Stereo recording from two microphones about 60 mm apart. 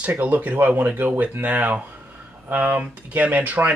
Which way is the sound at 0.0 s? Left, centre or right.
Right.